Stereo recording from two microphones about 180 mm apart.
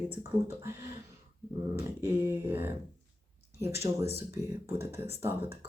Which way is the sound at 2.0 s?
10° right (ahead or behind).